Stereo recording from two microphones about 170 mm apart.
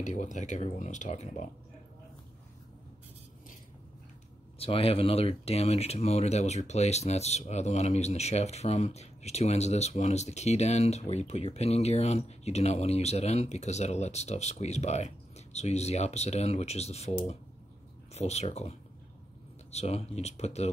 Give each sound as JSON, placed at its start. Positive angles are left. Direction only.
{"t": 0.0, "sound": "speech", "side_deg": 45}
{"t": 4.6, "sound": "speech", "side_deg": 35}
{"t": 18.1, "sound": "speech", "side_deg": 40}